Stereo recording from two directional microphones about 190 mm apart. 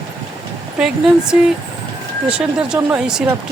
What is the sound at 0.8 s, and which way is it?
Speech, 5° right (ahead or behind).